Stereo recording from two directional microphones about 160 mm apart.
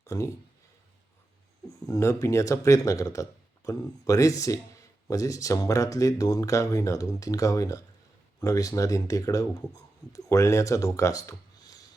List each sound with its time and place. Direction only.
0.1 s speech: 20° left (ahead or behind)
1.9 s speech: 20° left (ahead or behind)